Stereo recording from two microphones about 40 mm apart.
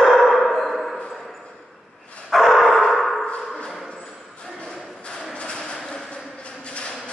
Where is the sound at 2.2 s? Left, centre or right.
Centre.